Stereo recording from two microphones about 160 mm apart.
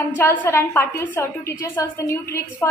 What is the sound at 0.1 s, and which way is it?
Speech, 15° left (ahead or behind).